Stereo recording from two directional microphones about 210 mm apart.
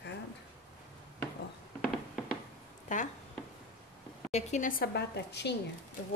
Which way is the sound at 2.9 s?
35° left (ahead or behind).